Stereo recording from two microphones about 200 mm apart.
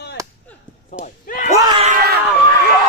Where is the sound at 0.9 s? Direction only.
40° left (ahead or behind).